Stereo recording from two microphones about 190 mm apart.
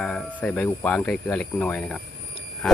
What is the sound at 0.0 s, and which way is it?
Speech, centre (ahead or behind).